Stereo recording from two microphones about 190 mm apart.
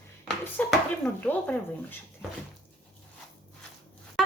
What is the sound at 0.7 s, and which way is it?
Speech, 5° left (ahead or behind).